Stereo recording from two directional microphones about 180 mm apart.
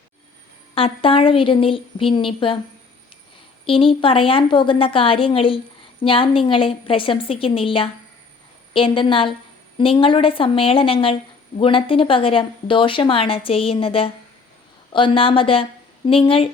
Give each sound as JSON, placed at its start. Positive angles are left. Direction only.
{"t": 0.8, "sound": "speech", "side_deg": 30}
{"t": 3.7, "sound": "a woman's voice", "side_deg": 30}